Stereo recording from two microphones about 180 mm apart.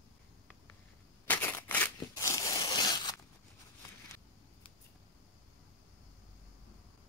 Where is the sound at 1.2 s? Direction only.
10° left (ahead or behind).